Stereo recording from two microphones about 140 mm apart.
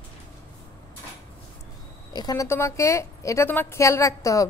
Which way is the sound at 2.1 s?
25° left (ahead or behind).